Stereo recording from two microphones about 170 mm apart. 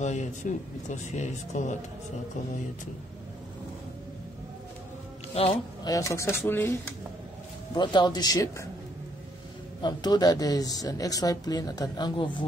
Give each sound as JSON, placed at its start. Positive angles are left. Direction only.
{"t": 0.0, "sound": "speech", "side_deg": 45}
{"t": 5.3, "sound": "speech", "side_deg": 35}
{"t": 5.9, "sound": "speech", "side_deg": 20}
{"t": 7.7, "sound": "speech", "side_deg": 25}
{"t": 9.8, "sound": "speech", "side_deg": 25}